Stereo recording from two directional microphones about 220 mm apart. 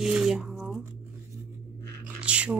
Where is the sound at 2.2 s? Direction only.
5° right (ahead or behind).